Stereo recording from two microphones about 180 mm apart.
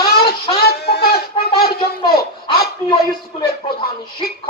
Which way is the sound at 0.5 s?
60° left (ahead or behind).